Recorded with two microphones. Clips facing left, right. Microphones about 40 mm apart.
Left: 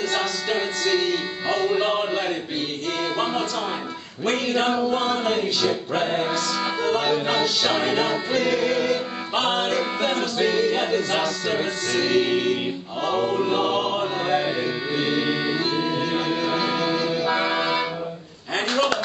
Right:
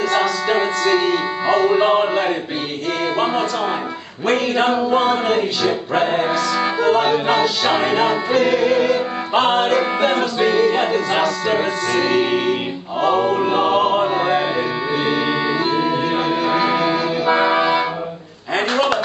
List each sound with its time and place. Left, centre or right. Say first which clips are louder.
0.1 s music: right 7 dB; centre
4.3 s music: right 5 dB; centre